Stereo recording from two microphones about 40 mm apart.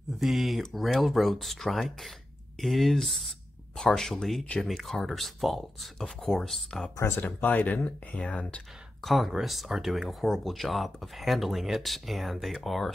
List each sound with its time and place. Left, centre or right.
0.2 s speech: centre
3.7 s speech: centre
5.9 s speech: centre
7.2 s speech: left
8.2 s speech: left
9.0 s speech: centre